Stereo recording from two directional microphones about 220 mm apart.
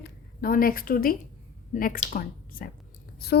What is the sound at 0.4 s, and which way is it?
A woman's voice, 40° left (ahead or behind).